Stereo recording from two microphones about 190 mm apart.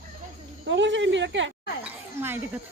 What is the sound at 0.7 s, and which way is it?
Speech, 70° right (ahead or behind).